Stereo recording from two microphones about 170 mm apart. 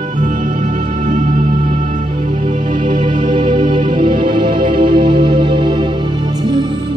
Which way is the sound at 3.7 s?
30° right (ahead or behind).